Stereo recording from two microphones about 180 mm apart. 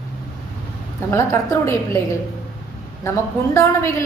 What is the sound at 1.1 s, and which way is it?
A woman's voice, 15° left (ahead or behind).